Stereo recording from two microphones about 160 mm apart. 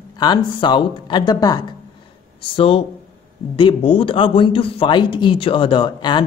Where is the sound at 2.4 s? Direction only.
35° left (ahead or behind).